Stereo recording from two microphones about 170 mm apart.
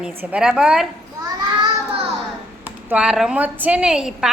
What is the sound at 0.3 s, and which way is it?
Speech, 5° right (ahead or behind).